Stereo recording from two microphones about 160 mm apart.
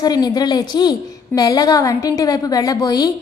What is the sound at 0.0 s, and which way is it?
A woman's voice, 25° left (ahead or behind).